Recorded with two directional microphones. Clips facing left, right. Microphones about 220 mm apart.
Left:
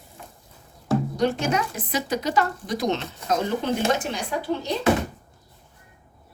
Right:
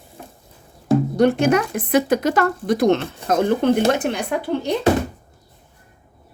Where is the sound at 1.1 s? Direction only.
60° right (ahead or behind).